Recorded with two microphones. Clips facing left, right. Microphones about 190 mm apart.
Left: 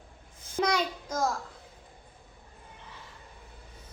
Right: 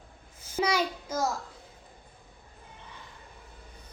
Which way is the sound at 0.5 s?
5° right (ahead or behind).